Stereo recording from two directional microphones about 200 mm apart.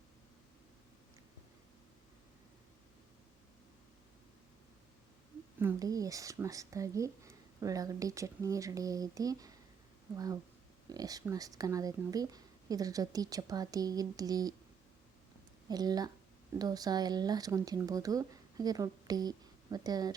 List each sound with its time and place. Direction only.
5.5 s speech: 15° right (ahead or behind)
10.8 s speech: 20° right (ahead or behind)
15.7 s speech: 20° right (ahead or behind)